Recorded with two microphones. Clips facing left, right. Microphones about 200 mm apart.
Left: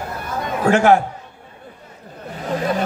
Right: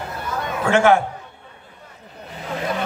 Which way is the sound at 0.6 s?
40° left (ahead or behind).